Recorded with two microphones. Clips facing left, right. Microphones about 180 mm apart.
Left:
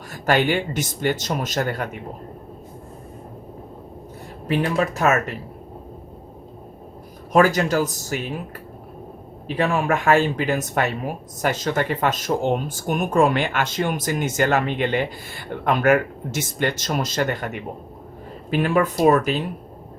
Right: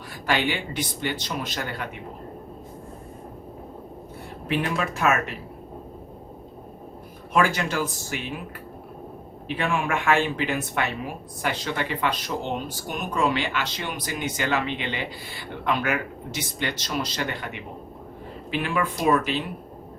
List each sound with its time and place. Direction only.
0.1 s speech: 45° left (ahead or behind)
4.4 s speech: 40° left (ahead or behind)
7.3 s speech: 40° left (ahead or behind)
9.6 s speech: 40° left (ahead or behind)